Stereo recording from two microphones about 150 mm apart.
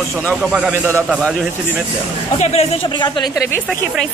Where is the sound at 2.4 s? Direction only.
45° left (ahead or behind).